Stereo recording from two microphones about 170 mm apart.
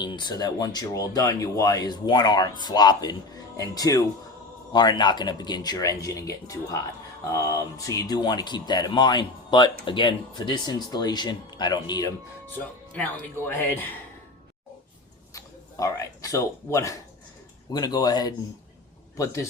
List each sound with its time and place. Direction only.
0.0 s speech: 25° left (ahead or behind)
12.5 s speech: 10° left (ahead or behind)
15.3 s speech: 20° left (ahead or behind)